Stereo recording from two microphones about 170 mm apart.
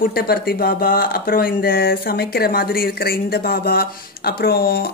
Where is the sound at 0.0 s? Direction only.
65° left (ahead or behind).